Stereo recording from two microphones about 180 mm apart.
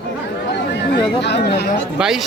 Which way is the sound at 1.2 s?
70° left (ahead or behind).